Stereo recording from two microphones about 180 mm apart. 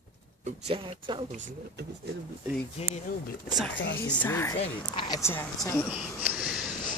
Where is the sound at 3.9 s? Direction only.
10° left (ahead or behind).